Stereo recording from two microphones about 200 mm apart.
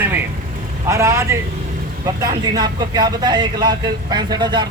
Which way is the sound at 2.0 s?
20° right (ahead or behind).